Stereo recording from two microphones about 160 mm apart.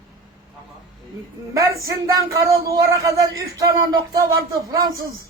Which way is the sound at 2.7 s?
20° right (ahead or behind).